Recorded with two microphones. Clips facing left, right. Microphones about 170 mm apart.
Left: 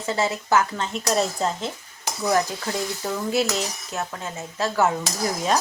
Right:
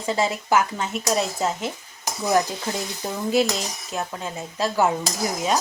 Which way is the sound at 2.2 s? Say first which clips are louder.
Right 1 dB; 20° right (ahead or behind).